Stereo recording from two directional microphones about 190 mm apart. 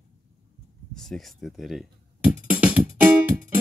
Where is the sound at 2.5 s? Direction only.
5° right (ahead or behind).